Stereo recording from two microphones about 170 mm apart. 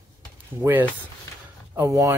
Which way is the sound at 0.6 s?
15° right (ahead or behind).